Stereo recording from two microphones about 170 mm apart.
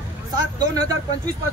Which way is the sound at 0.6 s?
20° right (ahead or behind).